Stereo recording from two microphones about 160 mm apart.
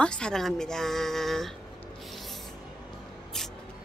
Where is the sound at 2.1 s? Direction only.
Centre (ahead or behind).